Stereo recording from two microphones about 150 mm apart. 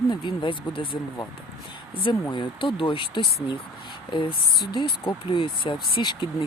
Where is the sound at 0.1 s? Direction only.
35° left (ahead or behind).